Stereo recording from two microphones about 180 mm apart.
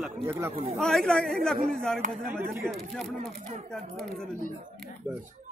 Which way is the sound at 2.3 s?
15° right (ahead or behind).